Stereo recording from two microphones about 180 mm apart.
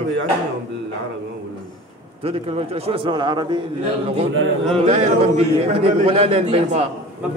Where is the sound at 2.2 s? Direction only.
35° right (ahead or behind).